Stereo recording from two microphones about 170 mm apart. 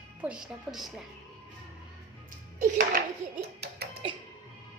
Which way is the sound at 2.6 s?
55° right (ahead or behind).